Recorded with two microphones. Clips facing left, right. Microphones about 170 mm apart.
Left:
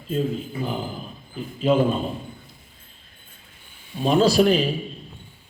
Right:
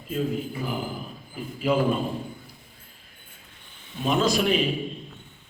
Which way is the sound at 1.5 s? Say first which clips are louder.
Left 3 dB; 25° left (ahead or behind).